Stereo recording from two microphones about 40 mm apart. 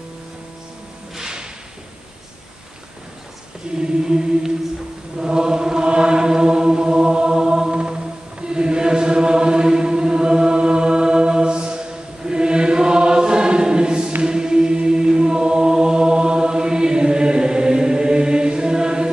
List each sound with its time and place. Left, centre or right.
1.1 s whip: centre
3.8 s choir: centre
5.1 s chant: centre
12.3 s choir: right
14.2 s chant: centre